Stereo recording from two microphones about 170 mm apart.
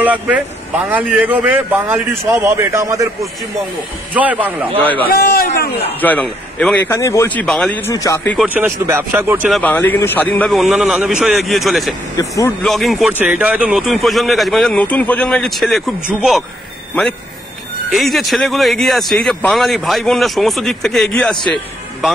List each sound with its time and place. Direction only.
0.0 s a man's voice: 10° right (ahead or behind)
4.1 s speech: 10° right (ahead or behind)
5.0 s a man's voice: 60° left (ahead or behind)
5.9 s a man's voice: 10° left (ahead or behind)
7.9 s speech: 20° left (ahead or behind)
8.5 s speech: 15° right (ahead or behind)
9.5 s speech: 10° left (ahead or behind)
12.2 s speech: 20° left (ahead or behind)
12.6 s speech: centre (ahead or behind)
17.9 s speech: centre (ahead or behind)